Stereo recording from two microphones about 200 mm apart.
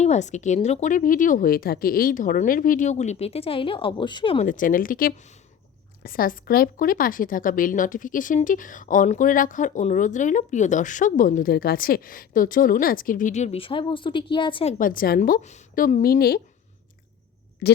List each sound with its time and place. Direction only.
0.0 s a woman's voice: 35° left (ahead or behind)
4.4 s a woman's voice: 40° left (ahead or behind)
17.6 s speech: 55° left (ahead or behind)